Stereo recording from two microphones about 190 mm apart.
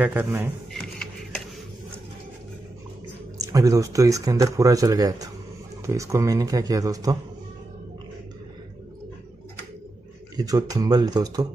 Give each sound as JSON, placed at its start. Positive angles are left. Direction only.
{"t": 0.0, "sound": "speech", "side_deg": -10}
{"t": 3.3, "sound": "speech", "side_deg": -20}
{"t": 10.3, "sound": "speech", "side_deg": -20}